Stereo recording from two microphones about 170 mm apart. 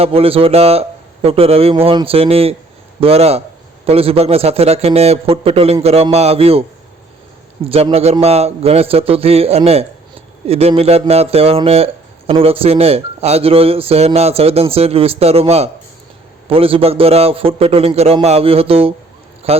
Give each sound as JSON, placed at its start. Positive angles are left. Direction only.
{"t": 0.0, "sound": "speech", "side_deg": -35}